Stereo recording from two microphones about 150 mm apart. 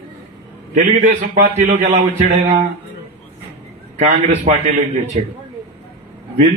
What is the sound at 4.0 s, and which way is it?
A man's voice, 55° right (ahead or behind).